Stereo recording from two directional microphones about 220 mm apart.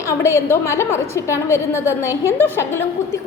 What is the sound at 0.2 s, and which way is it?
A woman's voice, 10° left (ahead or behind).